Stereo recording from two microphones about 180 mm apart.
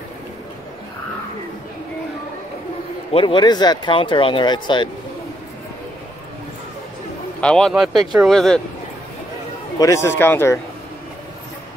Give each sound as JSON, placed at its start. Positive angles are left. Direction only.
{"t": 3.1, "sound": "speech", "side_deg": 30}
{"t": 7.3, "sound": "a man's voice", "side_deg": 5}
{"t": 9.8, "sound": "speech", "side_deg": 15}